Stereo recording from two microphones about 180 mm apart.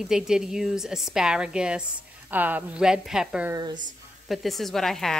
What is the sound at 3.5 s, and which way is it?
Speech, 25° right (ahead or behind).